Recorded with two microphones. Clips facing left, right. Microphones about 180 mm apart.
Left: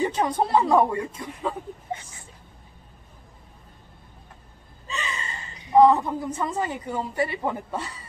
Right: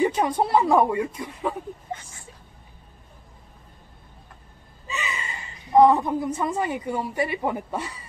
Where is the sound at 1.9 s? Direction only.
20° left (ahead or behind).